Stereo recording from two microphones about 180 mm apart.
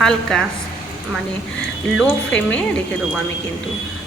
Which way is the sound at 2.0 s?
5° left (ahead or behind).